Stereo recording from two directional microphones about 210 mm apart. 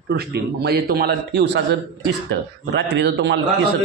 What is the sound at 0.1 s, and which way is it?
A man's voice, 50° right (ahead or behind).